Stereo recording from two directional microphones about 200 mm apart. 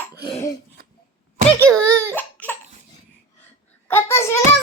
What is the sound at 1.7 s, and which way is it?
Crying, 10° right (ahead or behind).